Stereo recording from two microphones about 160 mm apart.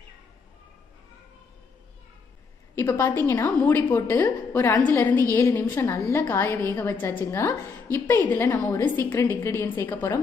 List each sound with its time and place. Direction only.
2.7 s a woman's voice: 15° left (ahead or behind)